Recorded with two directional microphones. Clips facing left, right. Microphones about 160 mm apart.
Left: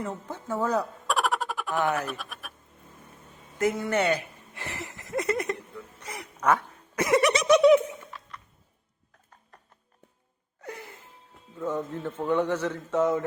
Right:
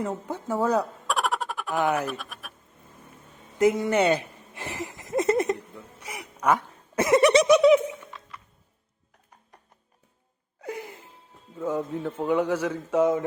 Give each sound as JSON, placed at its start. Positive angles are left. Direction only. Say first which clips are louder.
{"t": 0.3, "sound": "speech", "louder": "right 3 dB", "side_deg": -15}
{"t": 1.0, "sound": "a sound", "louder": "even", "side_deg": 0}
{"t": 1.8, "sound": "speech", "louder": "right 3 dB", "side_deg": -15}
{"t": 2.0, "sound": "speech", "louder": "right 3 dB", "side_deg": 0}
{"t": 3.6, "sound": "a sound", "louder": "right 4 dB", "side_deg": -20}
{"t": 6.0, "sound": "duck", "louder": "right 2 dB", "side_deg": -10}
{"t": 6.9, "sound": "giggle", "louder": "right 5 dB", "side_deg": -25}
{"t": 7.4, "sound": "a sound", "louder": "right 1 dB", "side_deg": -5}
{"t": 11.5, "sound": "speech", "louder": "right 2 dB", "side_deg": -10}